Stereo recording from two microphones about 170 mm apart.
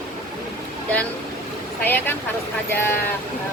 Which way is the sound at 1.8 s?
10° left (ahead or behind).